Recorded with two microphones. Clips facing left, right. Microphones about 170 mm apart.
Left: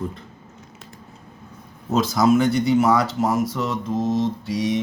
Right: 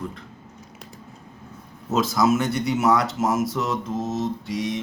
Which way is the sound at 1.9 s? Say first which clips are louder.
Left 3 dB; centre (ahead or behind).